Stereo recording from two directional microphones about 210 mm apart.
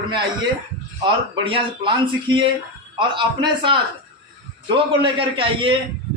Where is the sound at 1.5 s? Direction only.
25° right (ahead or behind).